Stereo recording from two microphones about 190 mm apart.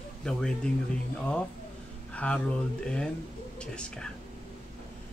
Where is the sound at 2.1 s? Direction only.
5° left (ahead or behind).